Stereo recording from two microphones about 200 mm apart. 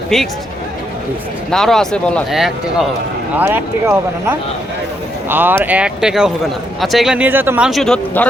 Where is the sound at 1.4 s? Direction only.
Centre (ahead or behind).